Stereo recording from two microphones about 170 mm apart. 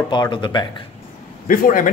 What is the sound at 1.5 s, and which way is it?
Speech, 55° left (ahead or behind).